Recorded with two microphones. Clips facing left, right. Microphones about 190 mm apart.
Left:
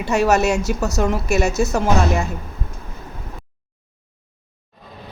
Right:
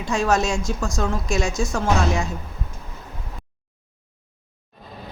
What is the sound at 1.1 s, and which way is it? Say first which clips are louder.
Speech: left 5 dB; 65° left (ahead or behind).